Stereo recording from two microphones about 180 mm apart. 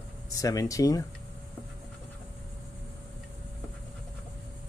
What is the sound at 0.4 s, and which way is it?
Speech, 20° left (ahead or behind).